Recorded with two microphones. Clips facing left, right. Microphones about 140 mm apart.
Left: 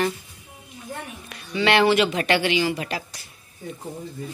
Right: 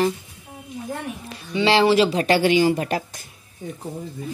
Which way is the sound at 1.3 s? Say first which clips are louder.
Right 2 dB; 25° right (ahead or behind).